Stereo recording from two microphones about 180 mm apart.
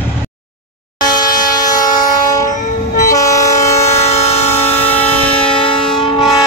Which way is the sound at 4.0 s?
35° left (ahead or behind).